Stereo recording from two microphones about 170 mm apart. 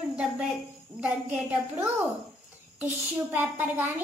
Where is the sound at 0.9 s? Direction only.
30° right (ahead or behind).